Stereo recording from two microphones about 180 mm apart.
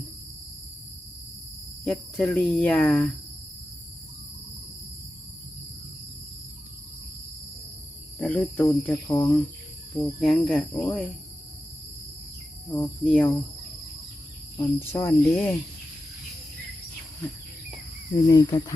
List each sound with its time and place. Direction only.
1.8 s speech: 5° left (ahead or behind)
8.2 s cricket: 10° left (ahead or behind)
9.9 s speech: centre (ahead or behind)
12.7 s cricket: 10° left (ahead or behind)
14.5 s cricket: 15° left (ahead or behind)
18.3 s speech: 20° left (ahead or behind)